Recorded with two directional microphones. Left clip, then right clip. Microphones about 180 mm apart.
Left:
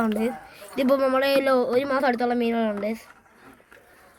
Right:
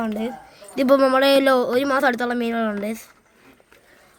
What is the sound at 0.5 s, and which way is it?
A man's voice, 60° right (ahead or behind).